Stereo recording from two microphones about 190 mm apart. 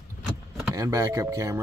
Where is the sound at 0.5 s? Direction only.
15° right (ahead or behind).